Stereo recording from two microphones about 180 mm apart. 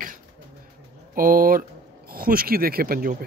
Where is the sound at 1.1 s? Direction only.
50° right (ahead or behind).